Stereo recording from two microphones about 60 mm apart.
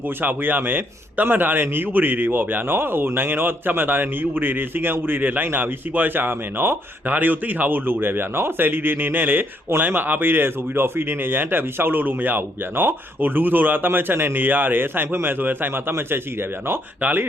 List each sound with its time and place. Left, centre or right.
0.2 s a man's voice: right